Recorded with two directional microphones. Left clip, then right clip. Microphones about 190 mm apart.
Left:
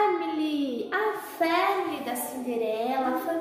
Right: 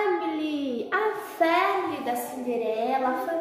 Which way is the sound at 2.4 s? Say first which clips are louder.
Right 1 dB; centre (ahead or behind).